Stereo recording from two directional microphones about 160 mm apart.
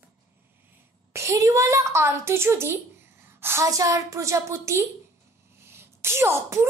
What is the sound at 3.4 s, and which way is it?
A woman's voice, 15° right (ahead or behind).